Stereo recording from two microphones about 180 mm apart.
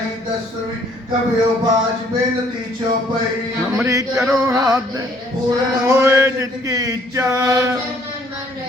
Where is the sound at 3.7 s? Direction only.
15° right (ahead or behind).